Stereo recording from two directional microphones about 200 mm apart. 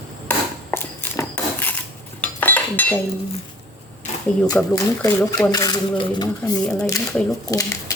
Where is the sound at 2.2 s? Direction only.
10° left (ahead or behind).